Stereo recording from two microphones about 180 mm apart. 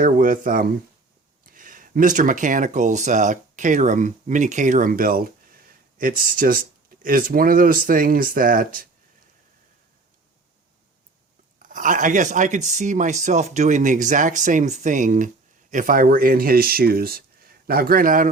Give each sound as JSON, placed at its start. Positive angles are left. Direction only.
{"t": 0.0, "sound": "speech", "side_deg": -50}
{"t": 11.6, "sound": "speech", "side_deg": -50}